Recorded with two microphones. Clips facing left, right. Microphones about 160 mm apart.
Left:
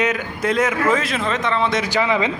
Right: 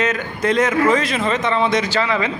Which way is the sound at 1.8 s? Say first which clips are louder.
Left 1 dB; 15° left (ahead or behind).